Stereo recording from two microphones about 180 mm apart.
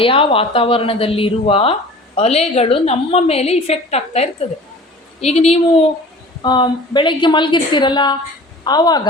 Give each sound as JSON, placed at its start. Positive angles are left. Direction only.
{"t": 0.0, "sound": "a woman's voice", "side_deg": 30}
{"t": 6.4, "sound": "a woman's voice", "side_deg": 25}